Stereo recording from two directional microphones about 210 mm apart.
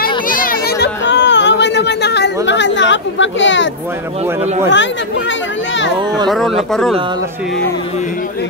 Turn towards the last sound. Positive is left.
turn(degrees=0)  # may be behind; listen again after turning